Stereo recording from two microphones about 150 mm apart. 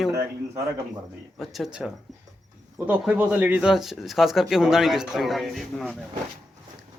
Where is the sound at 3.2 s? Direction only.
10° right (ahead or behind).